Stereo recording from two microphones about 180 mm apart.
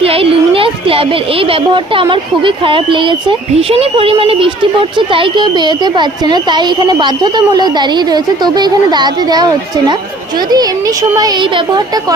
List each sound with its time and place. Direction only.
0.0 s speech: 30° right (ahead or behind)